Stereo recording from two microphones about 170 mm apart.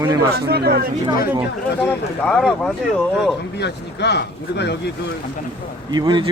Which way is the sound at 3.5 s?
80° left.